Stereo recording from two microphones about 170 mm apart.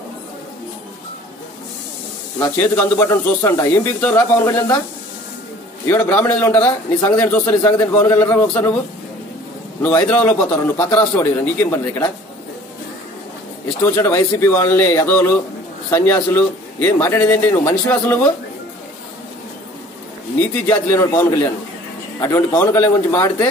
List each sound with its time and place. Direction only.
2.3 s speech: 10° left (ahead or behind)
5.9 s speech: 10° left (ahead or behind)
9.8 s speech: 10° left (ahead or behind)
13.8 s speech: 15° left (ahead or behind)
20.6 s speech: 15° left (ahead or behind)